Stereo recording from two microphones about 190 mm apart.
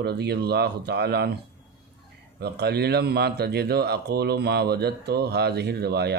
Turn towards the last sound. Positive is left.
turn(degrees=-60)  # may be behind; listen again after turning